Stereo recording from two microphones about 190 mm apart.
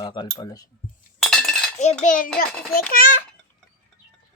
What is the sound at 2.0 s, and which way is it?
A child's voice, 45° left (ahead or behind).